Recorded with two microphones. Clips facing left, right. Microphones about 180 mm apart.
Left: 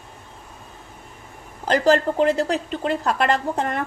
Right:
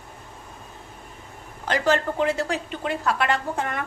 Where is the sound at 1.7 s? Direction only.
35° left (ahead or behind).